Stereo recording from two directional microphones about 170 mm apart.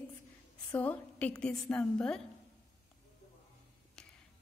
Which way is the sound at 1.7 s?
5° left (ahead or behind).